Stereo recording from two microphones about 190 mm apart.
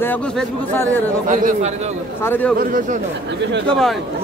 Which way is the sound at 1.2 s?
40° right (ahead or behind).